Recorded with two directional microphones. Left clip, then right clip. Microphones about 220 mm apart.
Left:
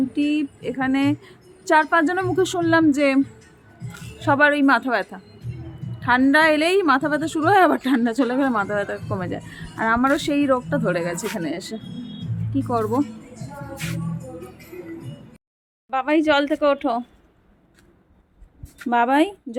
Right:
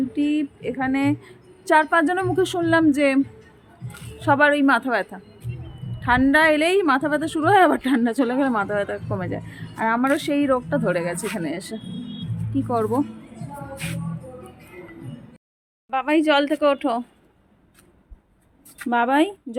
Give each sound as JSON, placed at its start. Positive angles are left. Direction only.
{"t": 0.1, "sound": "a woman's voice", "side_deg": 0}
{"t": 3.8, "sound": "music", "side_deg": 50}
{"t": 4.2, "sound": "a woman's voice", "side_deg": 0}
{"t": 13.8, "sound": "music", "side_deg": 0}
{"t": 15.9, "sound": "a woman's voice", "side_deg": 0}
{"t": 18.9, "sound": "a woman's voice", "side_deg": 5}